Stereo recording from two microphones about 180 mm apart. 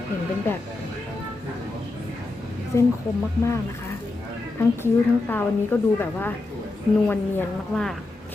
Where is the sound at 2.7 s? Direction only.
15° left (ahead or behind).